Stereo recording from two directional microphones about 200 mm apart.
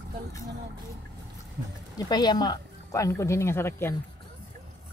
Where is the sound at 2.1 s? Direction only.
20° left (ahead or behind).